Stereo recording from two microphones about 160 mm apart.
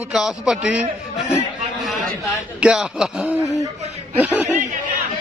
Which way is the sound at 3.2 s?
15° left (ahead or behind).